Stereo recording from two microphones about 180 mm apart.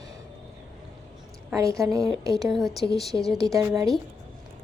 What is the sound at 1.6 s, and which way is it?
Speech, 15° right (ahead or behind).